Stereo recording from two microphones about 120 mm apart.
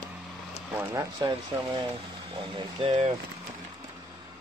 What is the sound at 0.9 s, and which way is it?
Speech, 35° right (ahead or behind).